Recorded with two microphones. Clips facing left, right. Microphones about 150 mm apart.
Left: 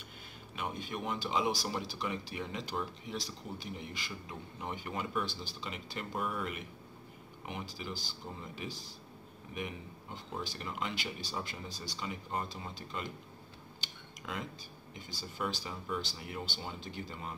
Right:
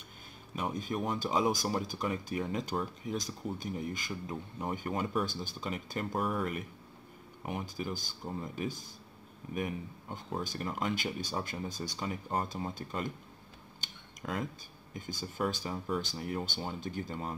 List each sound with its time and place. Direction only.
0.6 s speech: 40° right (ahead or behind)
13.7 s a sound: 45° right (ahead or behind)
15.0 s speech: 45° right (ahead or behind)